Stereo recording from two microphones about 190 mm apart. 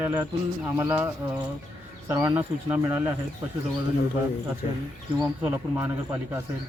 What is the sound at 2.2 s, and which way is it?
Speech, 10° right (ahead or behind).